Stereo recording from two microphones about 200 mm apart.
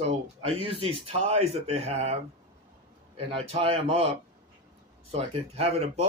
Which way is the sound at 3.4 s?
30° right (ahead or behind).